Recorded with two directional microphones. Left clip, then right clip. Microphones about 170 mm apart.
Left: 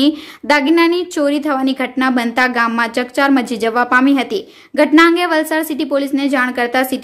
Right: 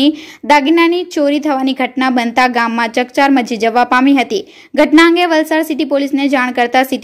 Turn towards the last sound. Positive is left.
turn(degrees=-20)  # may be behind; listen again after turning